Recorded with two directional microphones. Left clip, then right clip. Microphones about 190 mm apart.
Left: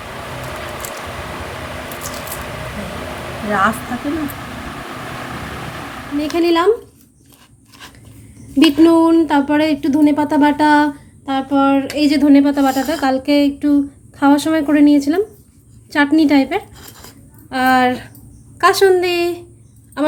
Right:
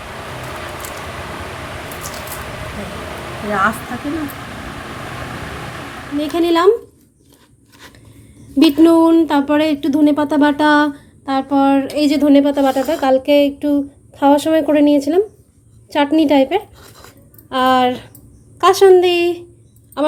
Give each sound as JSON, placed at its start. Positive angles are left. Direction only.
{"t": 3.5, "sound": "a woman's voice", "side_deg": -15}
{"t": 6.2, "sound": "speech", "side_deg": -20}
{"t": 8.5, "sound": "a woman's voice", "side_deg": -20}